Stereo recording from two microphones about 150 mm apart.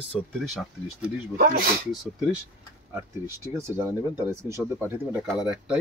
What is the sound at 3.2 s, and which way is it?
Speech, 20° right (ahead or behind).